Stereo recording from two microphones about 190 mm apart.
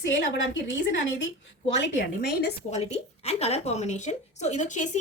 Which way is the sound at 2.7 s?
35° left (ahead or behind).